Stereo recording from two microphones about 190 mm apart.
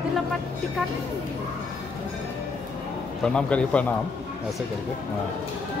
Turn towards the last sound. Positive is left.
turn(degrees=5)  # may be behind; listen again after turning